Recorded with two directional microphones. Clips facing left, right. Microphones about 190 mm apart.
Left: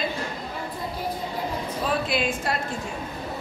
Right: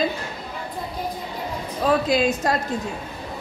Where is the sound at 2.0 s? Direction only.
40° right (ahead or behind).